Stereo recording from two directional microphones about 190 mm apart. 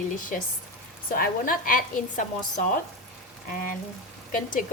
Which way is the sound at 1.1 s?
50° left (ahead or behind).